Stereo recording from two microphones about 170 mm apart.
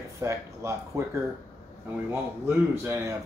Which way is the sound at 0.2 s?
15° right (ahead or behind).